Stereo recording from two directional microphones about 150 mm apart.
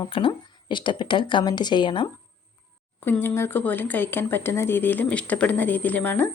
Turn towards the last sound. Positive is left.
turn(degrees=10)  # may be behind; listen again after turning